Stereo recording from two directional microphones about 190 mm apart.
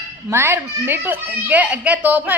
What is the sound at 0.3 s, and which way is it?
Speech, 15° right (ahead or behind).